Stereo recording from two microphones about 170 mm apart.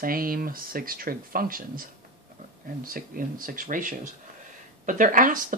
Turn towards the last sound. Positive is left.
turn(degrees=-50)  # may be behind; listen again after turning